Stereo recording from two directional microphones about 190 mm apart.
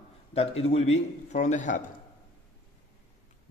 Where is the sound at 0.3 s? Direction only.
30° left (ahead or behind).